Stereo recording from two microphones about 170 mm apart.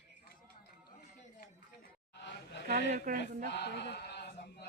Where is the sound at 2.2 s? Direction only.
90° left.